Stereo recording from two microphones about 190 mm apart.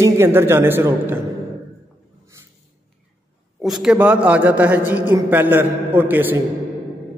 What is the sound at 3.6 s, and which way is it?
A man's voice, centre (ahead or behind).